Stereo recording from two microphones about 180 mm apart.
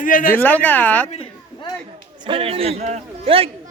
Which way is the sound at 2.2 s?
30° right (ahead or behind).